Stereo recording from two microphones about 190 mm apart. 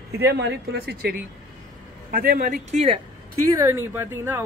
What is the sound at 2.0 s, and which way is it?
Speech, 50° right (ahead or behind).